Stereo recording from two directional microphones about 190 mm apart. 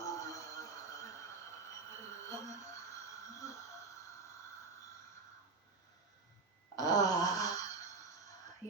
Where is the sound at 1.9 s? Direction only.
15° left (ahead or behind).